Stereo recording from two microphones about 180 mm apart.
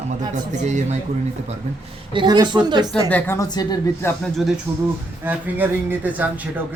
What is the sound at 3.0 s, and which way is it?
Speech, 10° left (ahead or behind).